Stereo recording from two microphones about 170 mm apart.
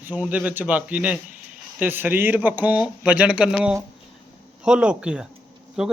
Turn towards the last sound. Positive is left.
turn(degrees=-5)  # may be behind; listen again after turning